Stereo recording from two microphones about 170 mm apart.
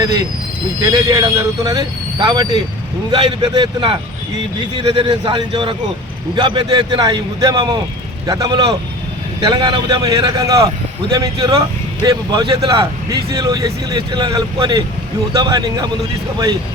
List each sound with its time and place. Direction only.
0.9 s speech: 20° right (ahead or behind)
4.9 s speech: 30° right (ahead or behind)